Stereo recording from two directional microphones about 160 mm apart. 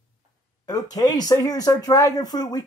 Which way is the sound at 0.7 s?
25° left (ahead or behind).